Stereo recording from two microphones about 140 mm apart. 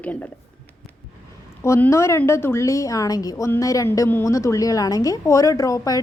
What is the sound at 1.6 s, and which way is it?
A woman's voice, 20° left (ahead or behind).